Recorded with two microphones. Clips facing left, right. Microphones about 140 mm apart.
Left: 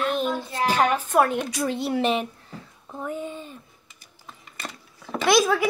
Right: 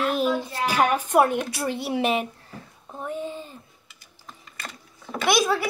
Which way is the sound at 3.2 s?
30° right (ahead or behind).